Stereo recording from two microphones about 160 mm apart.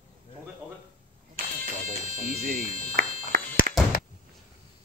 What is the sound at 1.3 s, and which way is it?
Fire alarm, 60° right (ahead or behind).